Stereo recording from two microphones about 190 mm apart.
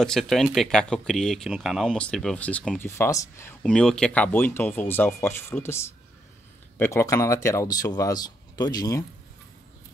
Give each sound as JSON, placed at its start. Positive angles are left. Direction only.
{"t": 0.0, "sound": "speech", "side_deg": 0}